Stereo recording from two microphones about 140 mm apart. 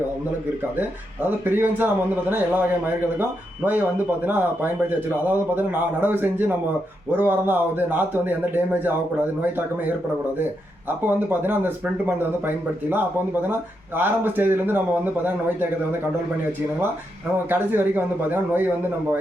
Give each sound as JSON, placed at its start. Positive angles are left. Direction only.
{"t": 0.8, "sound": "speech", "side_deg": -15}
{"t": 17.5, "sound": "speech", "side_deg": -15}